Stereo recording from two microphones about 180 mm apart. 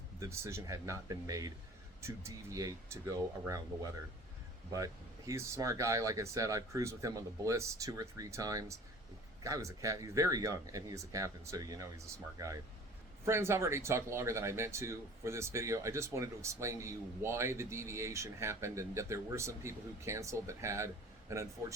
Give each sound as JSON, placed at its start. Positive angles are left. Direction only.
{"t": 0.2, "sound": "speech", "side_deg": -15}
{"t": 4.7, "sound": "speech", "side_deg": -20}